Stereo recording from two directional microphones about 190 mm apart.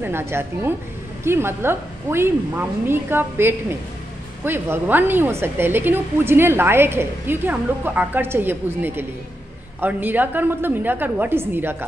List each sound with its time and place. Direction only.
0.0 s a woman's voice: 10° right (ahead or behind)